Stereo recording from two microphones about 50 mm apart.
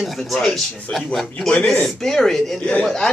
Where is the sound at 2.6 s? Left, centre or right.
Left.